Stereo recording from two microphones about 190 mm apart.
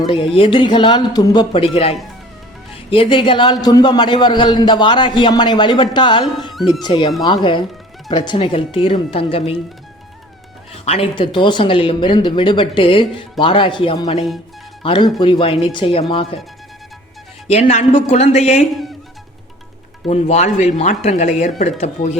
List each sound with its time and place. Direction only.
0.3 s a man's voice: 25° left (ahead or behind)
6.2 s speech: centre (ahead or behind)
6.8 s a man's voice: 25° left (ahead or behind)
10.8 s a man's voice: 30° left (ahead or behind)
17.5 s speech: 35° left (ahead or behind)
20.1 s speech: 35° left (ahead or behind)